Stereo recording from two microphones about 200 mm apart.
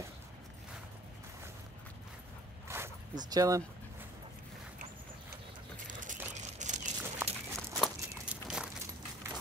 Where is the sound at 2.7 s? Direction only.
15° right (ahead or behind).